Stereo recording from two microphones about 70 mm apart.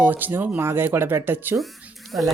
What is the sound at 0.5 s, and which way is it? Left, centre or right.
Speech, right.